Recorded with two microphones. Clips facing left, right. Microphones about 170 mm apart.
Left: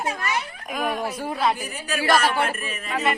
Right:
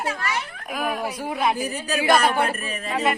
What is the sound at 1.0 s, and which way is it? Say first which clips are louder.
Speech: even; 15° right (ahead or behind).